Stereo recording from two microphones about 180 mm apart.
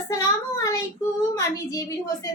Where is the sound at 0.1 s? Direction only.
20° left (ahead or behind).